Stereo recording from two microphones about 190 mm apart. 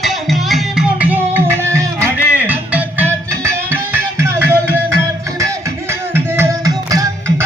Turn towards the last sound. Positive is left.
turn(degrees=-20)  # may be behind; listen again after turning